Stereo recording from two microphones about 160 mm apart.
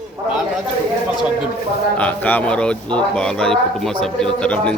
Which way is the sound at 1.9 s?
10° left (ahead or behind).